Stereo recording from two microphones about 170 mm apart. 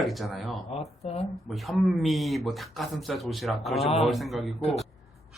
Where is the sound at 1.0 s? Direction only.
35° left (ahead or behind).